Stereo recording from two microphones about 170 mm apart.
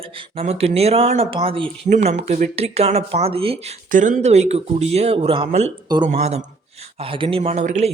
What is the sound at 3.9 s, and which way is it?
Speech, 50° right (ahead or behind).